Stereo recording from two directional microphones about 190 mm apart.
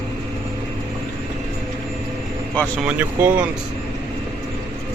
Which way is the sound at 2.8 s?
10° right (ahead or behind).